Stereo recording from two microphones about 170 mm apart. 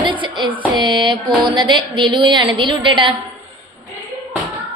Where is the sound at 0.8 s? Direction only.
30° right (ahead or behind).